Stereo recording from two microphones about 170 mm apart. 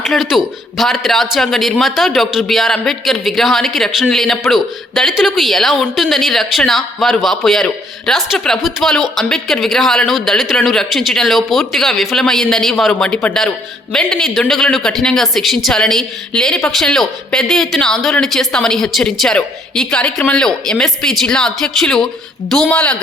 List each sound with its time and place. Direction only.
0.0 s speech: centre (ahead or behind)